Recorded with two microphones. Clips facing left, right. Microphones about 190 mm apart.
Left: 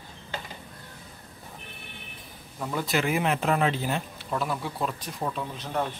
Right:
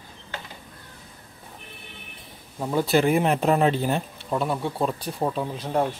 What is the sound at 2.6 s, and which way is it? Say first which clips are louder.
Speech: right 7 dB; 30° right (ahead or behind).